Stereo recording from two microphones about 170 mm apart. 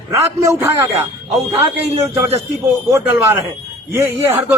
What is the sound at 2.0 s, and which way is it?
A man's voice, 15° right (ahead or behind).